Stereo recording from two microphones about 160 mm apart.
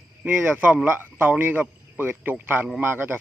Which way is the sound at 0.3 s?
15° right (ahead or behind).